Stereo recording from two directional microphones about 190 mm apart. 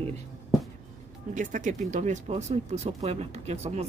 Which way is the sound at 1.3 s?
40° right (ahead or behind).